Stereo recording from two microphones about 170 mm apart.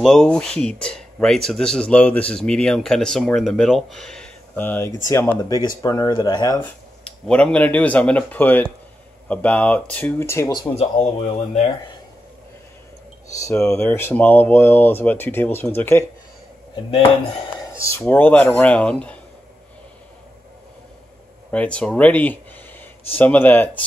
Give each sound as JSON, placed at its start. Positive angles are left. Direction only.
{"t": 0.0, "sound": "speech", "side_deg": 5}
{"t": 7.1, "sound": "speech", "side_deg": 5}
{"t": 10.8, "sound": "speech", "side_deg": 40}
{"t": 13.6, "sound": "speech", "side_deg": 10}
{"t": 17.7, "sound": "speech", "side_deg": 15}
{"t": 21.5, "sound": "speech", "side_deg": 5}